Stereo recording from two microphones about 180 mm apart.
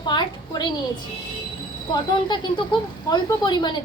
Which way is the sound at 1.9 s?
25° left (ahead or behind).